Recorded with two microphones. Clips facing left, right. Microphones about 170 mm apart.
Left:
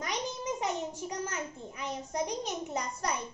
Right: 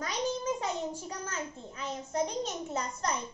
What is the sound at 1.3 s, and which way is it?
A child's voice, 15° left (ahead or behind).